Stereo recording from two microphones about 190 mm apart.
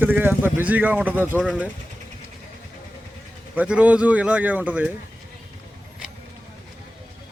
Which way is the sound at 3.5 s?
5° right (ahead or behind).